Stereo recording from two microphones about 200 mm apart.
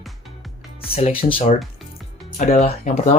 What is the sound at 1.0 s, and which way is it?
Speech, 35° left (ahead or behind).